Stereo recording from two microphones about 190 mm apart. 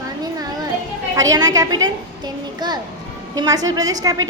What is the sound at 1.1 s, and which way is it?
A child's voice, 20° right (ahead or behind).